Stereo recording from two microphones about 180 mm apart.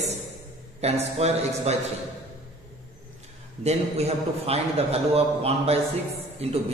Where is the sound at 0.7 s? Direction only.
35° right (ahead or behind).